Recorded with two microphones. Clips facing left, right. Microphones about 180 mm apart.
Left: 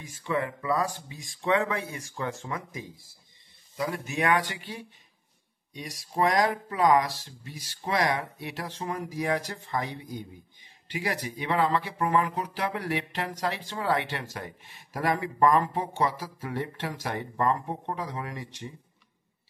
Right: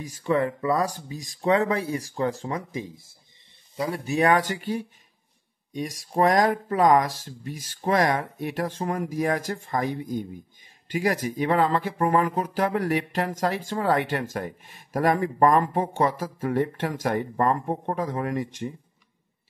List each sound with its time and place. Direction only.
0.0 s speech: 40° right (ahead or behind)